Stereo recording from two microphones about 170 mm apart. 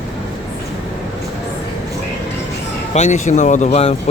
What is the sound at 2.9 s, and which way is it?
Speech, 45° left (ahead or behind).